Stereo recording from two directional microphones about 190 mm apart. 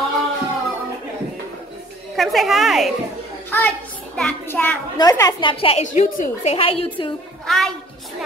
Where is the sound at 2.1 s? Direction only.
Centre (ahead or behind).